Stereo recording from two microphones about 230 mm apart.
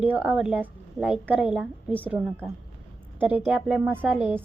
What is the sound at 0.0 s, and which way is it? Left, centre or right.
A woman's voice, centre.